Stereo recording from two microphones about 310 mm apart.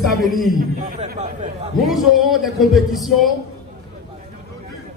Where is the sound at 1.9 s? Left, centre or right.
Centre.